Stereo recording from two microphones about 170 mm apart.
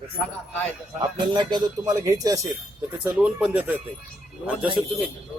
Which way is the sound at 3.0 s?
5° right (ahead or behind).